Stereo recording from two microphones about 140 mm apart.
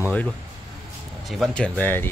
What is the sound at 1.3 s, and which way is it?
Speech, 5° left (ahead or behind).